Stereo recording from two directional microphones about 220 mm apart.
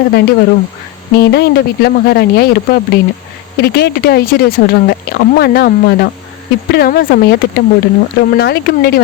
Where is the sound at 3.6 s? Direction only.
45° left (ahead or behind).